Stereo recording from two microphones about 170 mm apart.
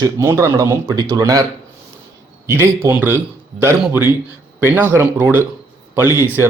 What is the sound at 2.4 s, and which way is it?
Speech, 15° right (ahead or behind).